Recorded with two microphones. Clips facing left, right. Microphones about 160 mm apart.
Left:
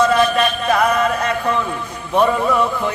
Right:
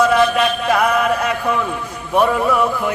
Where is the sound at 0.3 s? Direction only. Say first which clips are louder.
Even; 5° right (ahead or behind).